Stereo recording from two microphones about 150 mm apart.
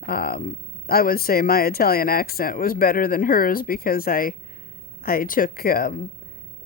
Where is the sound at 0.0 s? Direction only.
90° left.